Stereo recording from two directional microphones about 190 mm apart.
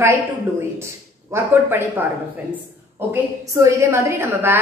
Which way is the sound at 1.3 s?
10° right (ahead or behind).